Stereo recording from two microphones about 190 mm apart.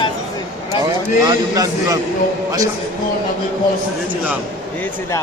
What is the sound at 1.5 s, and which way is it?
Speech, 20° right (ahead or behind).